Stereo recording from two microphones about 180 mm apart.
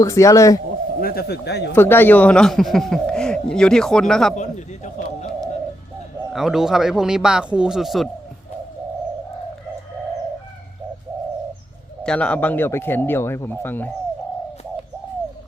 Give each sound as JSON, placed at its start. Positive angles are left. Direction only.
{"t": 0.0, "sound": "speech", "side_deg": 15}
{"t": 1.0, "sound": "speech", "side_deg": 60}
{"t": 1.7, "sound": "speech", "side_deg": 10}
{"t": 4.4, "sound": "a sound", "side_deg": 40}
{"t": 6.3, "sound": "speech", "side_deg": 0}
{"t": 12.0, "sound": "speech", "side_deg": 5}